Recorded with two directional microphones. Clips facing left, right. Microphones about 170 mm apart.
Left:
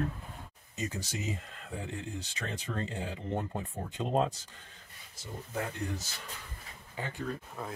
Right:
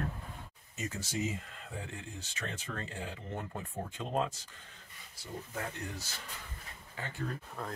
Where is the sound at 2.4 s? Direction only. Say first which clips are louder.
Left 3 dB; 25° left (ahead or behind).